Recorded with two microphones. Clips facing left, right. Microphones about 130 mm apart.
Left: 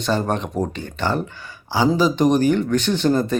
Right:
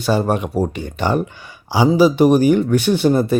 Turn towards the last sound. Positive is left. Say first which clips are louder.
# right 3 dB
turn(degrees=-10)  # may be behind; listen again after turning